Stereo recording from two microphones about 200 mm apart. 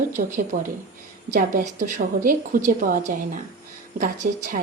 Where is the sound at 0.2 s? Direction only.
35° right (ahead or behind).